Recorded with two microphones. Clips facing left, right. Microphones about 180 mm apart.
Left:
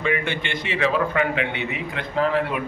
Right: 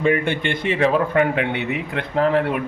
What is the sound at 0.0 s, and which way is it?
A man's voice, 50° right (ahead or behind).